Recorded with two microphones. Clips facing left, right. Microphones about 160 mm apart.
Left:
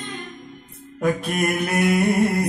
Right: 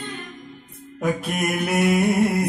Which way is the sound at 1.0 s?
5° right (ahead or behind).